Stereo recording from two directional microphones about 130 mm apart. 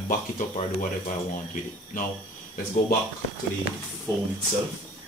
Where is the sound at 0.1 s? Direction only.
75° left (ahead or behind).